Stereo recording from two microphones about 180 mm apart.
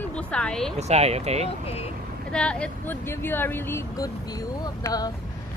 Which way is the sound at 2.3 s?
5° left (ahead or behind).